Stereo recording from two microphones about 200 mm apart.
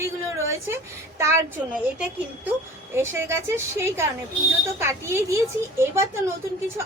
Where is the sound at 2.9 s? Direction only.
15° right (ahead or behind).